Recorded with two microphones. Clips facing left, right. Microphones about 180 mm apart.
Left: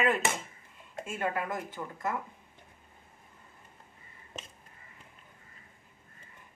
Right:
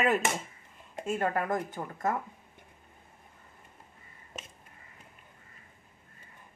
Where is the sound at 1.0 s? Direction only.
40° right (ahead or behind).